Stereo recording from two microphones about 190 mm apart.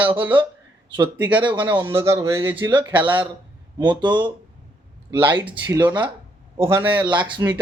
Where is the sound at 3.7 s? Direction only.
25° right (ahead or behind).